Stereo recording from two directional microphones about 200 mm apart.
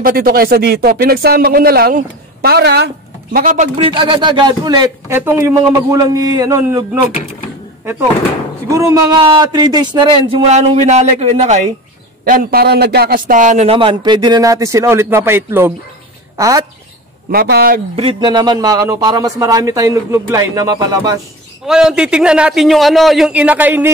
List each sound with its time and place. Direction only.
0.0 s speech: 45° right (ahead or behind)
3.3 s speech: 40° right (ahead or behind)
3.7 s speech: 25° right (ahead or behind)
8.6 s speech: 15° right (ahead or behind); by 11.6 s 35° right (ahead or behind)
12.3 s speech: 45° right (ahead or behind); by 16.6 s 15° right (ahead or behind)
17.3 s speech: 50° right (ahead or behind)
17.9 s a man's voice: 25° right (ahead or behind)
21.6 s a man's voice: 5° right (ahead or behind)